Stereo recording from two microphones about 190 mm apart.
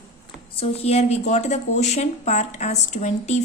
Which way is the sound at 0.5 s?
30° left (ahead or behind).